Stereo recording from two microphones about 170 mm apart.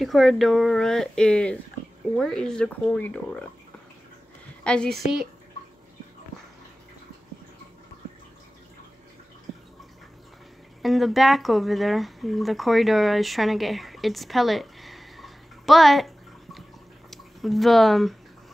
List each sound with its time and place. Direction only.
0.0 s speech: centre (ahead or behind)
4.6 s speech: 5° left (ahead or behind)
10.8 s speech: centre (ahead or behind)
17.1 s speech: centre (ahead or behind)